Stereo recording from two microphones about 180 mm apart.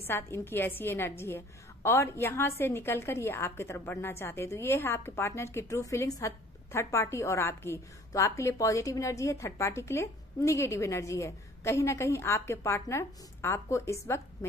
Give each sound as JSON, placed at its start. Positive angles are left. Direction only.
{"t": 0.0, "sound": "a woman's voice", "side_deg": 15}